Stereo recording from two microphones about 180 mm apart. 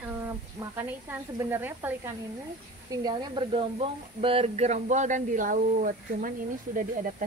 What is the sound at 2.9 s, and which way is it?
Speech, 20° right (ahead or behind).